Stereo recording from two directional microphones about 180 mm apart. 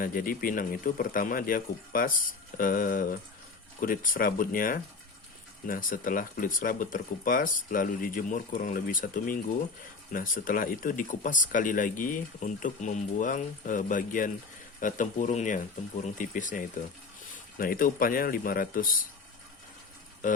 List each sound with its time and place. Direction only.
0.0 s speech: 50° left (ahead or behind)